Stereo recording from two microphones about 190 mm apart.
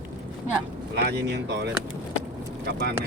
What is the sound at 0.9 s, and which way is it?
Speech, 60° right (ahead or behind).